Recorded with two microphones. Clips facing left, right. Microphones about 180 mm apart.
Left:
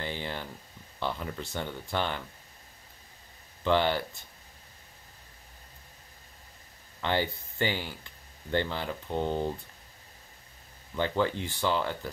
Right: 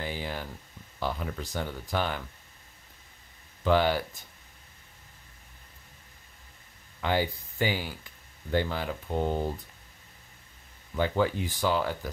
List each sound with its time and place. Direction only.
0.0 s a sound: 10° right (ahead or behind)
0.9 s speech: 5° right (ahead or behind)
3.6 s speech: 10° right (ahead or behind)
7.0 s speech: 10° right (ahead or behind)
11.0 s speech: 10° right (ahead or behind)